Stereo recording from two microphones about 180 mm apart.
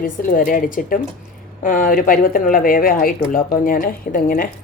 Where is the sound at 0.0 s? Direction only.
50° left (ahead or behind).